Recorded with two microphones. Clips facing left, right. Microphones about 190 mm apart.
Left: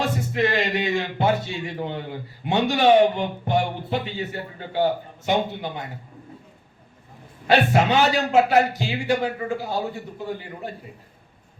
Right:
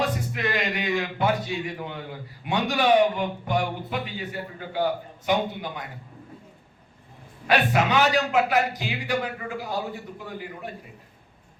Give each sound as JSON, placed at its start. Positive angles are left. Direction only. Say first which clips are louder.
{"t": 0.0, "sound": "a sound", "louder": "left 4 dB", "side_deg": 30}
{"t": 2.4, "sound": "a man's voice", "louder": "left 4 dB", "side_deg": 25}
{"t": 7.4, "sound": "a man's voice", "louder": "left 4 dB", "side_deg": 30}